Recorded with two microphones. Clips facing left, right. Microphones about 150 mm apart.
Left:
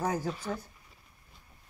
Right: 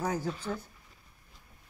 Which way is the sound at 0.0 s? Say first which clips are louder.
Left 1 dB; 10° left (ahead or behind).